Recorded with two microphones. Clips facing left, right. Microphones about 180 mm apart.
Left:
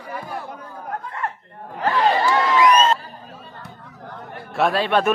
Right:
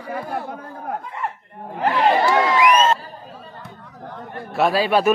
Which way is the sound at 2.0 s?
20° right (ahead or behind).